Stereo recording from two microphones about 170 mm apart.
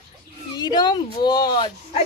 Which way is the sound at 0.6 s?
25° left (ahead or behind).